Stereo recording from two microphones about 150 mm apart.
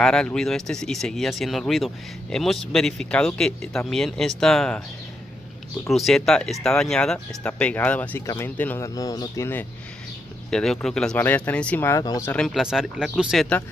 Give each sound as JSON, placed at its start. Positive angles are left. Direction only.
{"t": 0.0, "sound": "speech", "side_deg": 5}
{"t": 5.9, "sound": "speech", "side_deg": 0}
{"t": 10.5, "sound": "speech", "side_deg": 5}
{"t": 12.3, "sound": "speech", "side_deg": 5}